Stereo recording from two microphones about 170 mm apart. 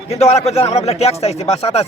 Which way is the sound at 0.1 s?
40° left (ahead or behind).